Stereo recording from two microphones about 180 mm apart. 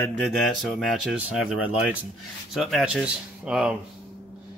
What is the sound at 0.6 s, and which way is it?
Speech, centre (ahead or behind).